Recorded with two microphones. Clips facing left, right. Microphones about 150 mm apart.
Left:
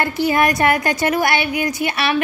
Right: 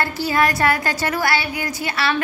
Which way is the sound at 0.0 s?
20° left (ahead or behind).